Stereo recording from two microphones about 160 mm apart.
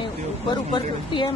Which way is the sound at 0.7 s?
30° left (ahead or behind).